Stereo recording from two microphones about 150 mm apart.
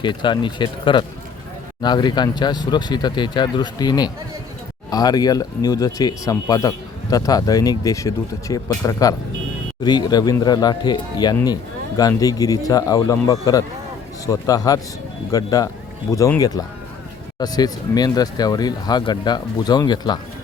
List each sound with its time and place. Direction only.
0.0 s speech: 30° left (ahead or behind)